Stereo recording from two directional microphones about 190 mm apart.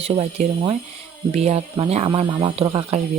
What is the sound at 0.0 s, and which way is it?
Speech, 35° right (ahead or behind).